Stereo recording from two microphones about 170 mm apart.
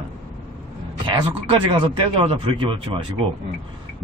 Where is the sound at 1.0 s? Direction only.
30° right (ahead or behind).